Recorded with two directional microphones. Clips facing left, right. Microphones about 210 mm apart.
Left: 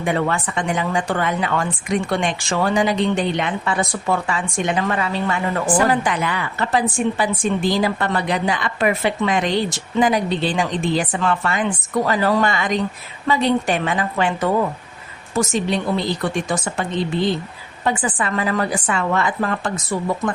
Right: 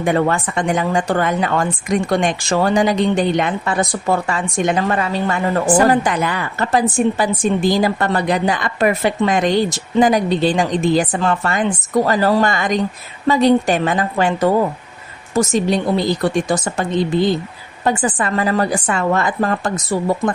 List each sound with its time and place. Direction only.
0.0 s a woman's voice: 45° right (ahead or behind)
17.8 s a woman's voice: 40° right (ahead or behind)